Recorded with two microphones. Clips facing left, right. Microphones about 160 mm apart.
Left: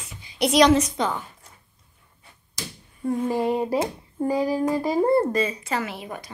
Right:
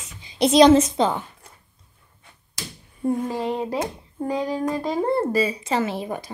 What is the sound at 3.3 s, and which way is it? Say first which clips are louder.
Speech: left 3 dB; 10° left (ahead or behind).